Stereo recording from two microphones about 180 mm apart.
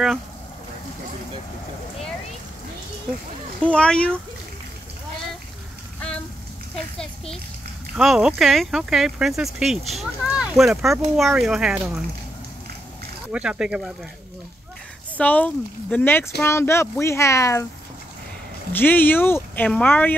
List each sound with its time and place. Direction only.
3.6 s speech: 5° left (ahead or behind)
5.9 s a sound: 5° left (ahead or behind)
7.9 s speech: 5° right (ahead or behind)
13.3 s speech: 5° right (ahead or behind)
15.1 s speech: 10° left (ahead or behind)
18.7 s speech: 10° left (ahead or behind)